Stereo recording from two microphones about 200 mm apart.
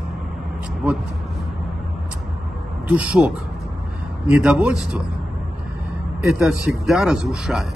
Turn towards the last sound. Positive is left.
turn(degrees=0)  # may be behind; listen again after turning